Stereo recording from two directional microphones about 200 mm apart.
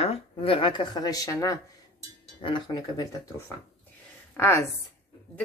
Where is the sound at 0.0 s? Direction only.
30° left (ahead or behind).